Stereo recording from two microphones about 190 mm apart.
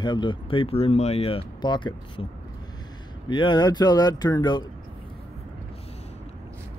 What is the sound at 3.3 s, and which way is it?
Speech, 25° left (ahead or behind).